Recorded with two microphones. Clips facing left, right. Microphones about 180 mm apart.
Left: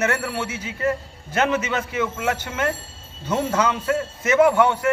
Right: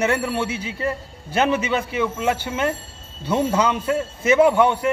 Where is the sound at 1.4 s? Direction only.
10° right (ahead or behind); by 2.6 s 30° right (ahead or behind).